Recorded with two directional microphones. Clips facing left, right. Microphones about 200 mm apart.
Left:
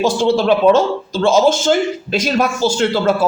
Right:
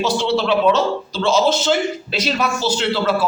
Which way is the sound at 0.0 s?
50° left (ahead or behind).